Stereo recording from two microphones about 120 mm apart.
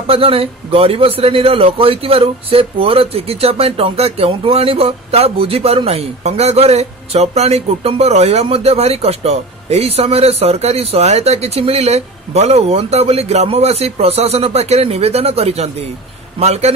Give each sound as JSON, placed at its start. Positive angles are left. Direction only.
{"t": 0.0, "sound": "a man's voice", "side_deg": -50}